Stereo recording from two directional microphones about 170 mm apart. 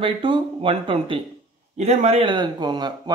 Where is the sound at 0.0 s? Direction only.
30° right (ahead or behind).